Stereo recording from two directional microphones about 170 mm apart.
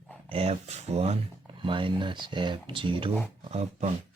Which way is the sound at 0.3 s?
35° right (ahead or behind).